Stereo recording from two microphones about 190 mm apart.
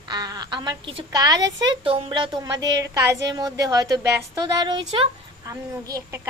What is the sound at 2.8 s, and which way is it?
Speech, 15° right (ahead or behind).